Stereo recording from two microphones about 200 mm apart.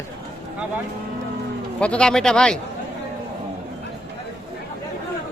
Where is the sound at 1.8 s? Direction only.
5° left (ahead or behind).